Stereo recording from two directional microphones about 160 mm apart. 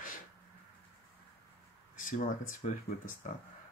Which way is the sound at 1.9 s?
55° left (ahead or behind).